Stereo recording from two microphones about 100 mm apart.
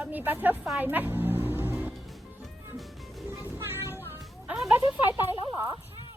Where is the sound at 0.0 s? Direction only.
15° right (ahead or behind).